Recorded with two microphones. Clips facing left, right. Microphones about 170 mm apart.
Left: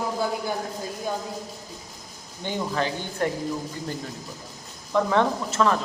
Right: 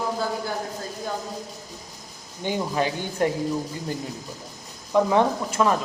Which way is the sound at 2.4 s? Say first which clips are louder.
Right 2 dB; 15° right (ahead or behind).